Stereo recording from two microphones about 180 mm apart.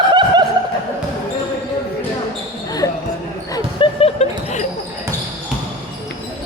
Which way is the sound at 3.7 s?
35° left (ahead or behind).